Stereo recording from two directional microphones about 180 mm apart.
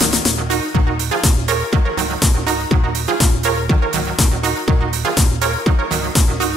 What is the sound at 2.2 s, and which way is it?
Music, centre (ahead or behind).